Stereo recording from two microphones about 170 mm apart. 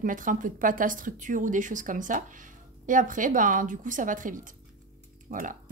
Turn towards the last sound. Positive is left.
turn(degrees=-50)  # may be behind; listen again after turning